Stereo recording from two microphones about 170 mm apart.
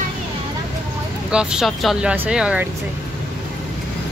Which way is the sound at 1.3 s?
5° right (ahead or behind).